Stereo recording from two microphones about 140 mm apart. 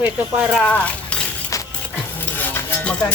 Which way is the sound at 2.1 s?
15° left (ahead or behind).